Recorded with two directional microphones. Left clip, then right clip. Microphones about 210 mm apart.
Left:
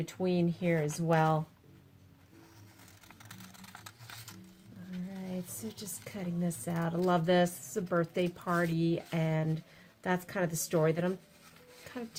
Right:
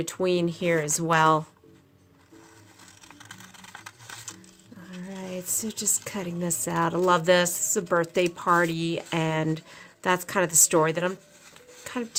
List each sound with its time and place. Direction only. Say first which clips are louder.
0.0 s speech: right 8 dB; 45° right (ahead or behind)
3.2 s typing: right 7 dB; centre (ahead or behind)
5.1 s speech: right 12 dB; 40° right (ahead or behind)
11.9 s a sound: right 11 dB; 40° right (ahead or behind)